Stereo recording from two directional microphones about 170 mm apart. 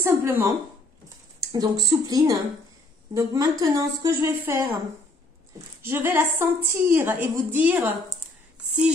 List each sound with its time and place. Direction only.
0.0 s a woman's voice: 15° right (ahead or behind)
1.5 s a woman's voice: 25° right (ahead or behind)
5.9 s a woman's voice: 15° right (ahead or behind)